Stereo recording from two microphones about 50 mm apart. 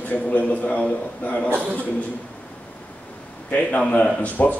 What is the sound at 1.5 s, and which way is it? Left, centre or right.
Speech, right.